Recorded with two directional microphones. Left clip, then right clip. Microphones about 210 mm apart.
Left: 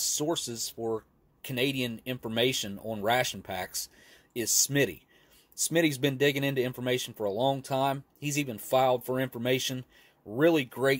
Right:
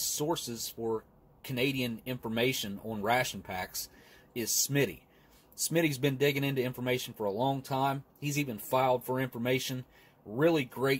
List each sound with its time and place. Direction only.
0.0 s speech: 35° left (ahead or behind)